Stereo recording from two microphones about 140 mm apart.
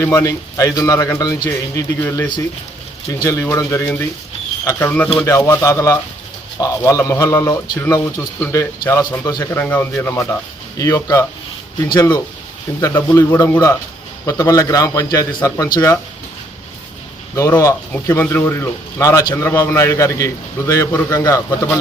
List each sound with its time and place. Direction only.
0.0 s a man's voice: 20° left (ahead or behind)
5.2 s a man's voice: 20° left (ahead or behind)
17.3 s a man's voice: 20° left (ahead or behind)